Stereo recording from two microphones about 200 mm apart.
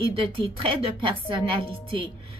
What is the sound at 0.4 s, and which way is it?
A woman's voice, 25° right (ahead or behind).